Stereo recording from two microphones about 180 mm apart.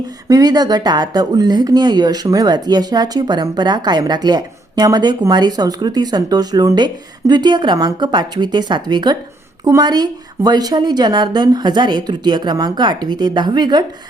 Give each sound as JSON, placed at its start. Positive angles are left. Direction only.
{"t": 0.3, "sound": "speech", "side_deg": -20}